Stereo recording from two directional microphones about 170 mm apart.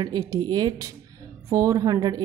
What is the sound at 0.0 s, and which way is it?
A woman's voice, 20° right (ahead or behind).